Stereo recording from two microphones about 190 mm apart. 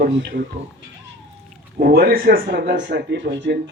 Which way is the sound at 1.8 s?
50° right (ahead or behind).